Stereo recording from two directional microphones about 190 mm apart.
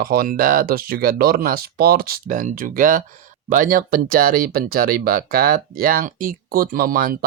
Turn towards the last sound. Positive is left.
turn(degrees=-50)  # may be behind; listen again after turning